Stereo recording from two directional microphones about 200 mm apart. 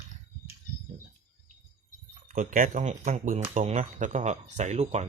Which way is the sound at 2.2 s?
40° right (ahead or behind).